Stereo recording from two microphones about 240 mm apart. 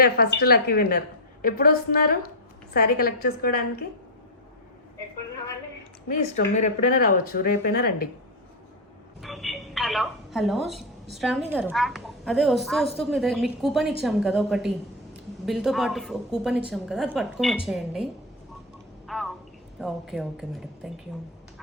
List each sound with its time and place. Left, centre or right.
0.0 s a woman's voice: left
6.6 s a woman's voice: left
9.2 s a woman's voice: centre
19.0 s a sound: centre
19.8 s a woman's voice: centre